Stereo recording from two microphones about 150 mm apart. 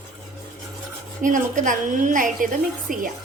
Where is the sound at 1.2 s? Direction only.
60° right (ahead or behind).